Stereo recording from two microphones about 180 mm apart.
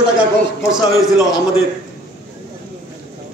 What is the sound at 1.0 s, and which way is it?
Speech, 20° left (ahead or behind).